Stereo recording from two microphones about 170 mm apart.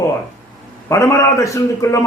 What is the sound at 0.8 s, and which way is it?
A man's voice, 15° left (ahead or behind).